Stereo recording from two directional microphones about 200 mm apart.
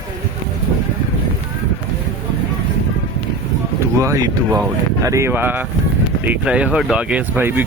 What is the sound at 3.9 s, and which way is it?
Speech, 15° right (ahead or behind).